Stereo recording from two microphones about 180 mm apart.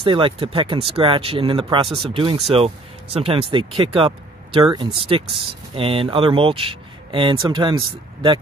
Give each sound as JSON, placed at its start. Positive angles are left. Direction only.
{"t": 0.0, "sound": "speech", "side_deg": -30}